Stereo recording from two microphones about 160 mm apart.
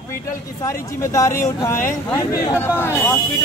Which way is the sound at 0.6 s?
20° left (ahead or behind).